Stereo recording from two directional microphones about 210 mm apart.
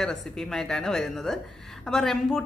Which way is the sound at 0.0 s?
Centre (ahead or behind).